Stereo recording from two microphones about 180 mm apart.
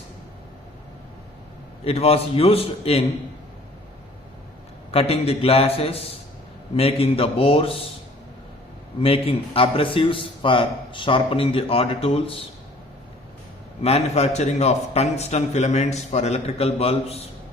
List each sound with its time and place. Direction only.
1.8 s a man's voice: 35° left (ahead or behind)
4.9 s a man's voice: 35° left (ahead or behind)
9.0 s a man's voice: 30° left (ahead or behind)
13.8 s a man's voice: 35° left (ahead or behind)